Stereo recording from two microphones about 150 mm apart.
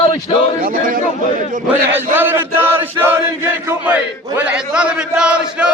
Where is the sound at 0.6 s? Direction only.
70° right (ahead or behind).